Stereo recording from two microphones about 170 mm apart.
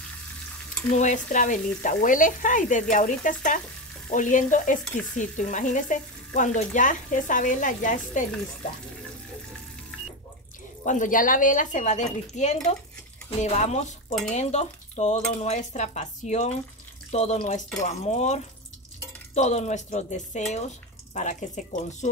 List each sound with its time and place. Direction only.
0.9 s frying: 45° left (ahead or behind)
10.8 s frying: 45° left (ahead or behind)
13.4 s speech: 40° left (ahead or behind)
19.3 s frying: 40° left (ahead or behind)